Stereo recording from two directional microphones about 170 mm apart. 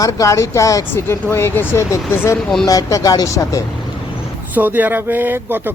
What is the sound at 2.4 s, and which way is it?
Speech, centre (ahead or behind).